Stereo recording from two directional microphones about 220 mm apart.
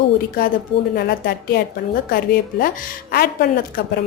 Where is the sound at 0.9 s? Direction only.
45° left (ahead or behind).